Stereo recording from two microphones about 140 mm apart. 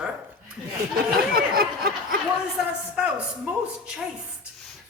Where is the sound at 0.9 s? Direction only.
90° right.